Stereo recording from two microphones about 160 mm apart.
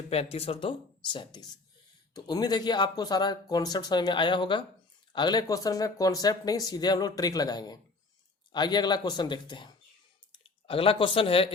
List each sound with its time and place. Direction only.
0.1 s speech: 40° left (ahead or behind)